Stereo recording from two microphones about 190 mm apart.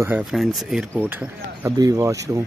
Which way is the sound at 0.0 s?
5° right (ahead or behind).